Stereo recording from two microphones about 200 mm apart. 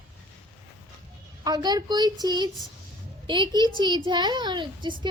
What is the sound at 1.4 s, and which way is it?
Speech, 20° right (ahead or behind).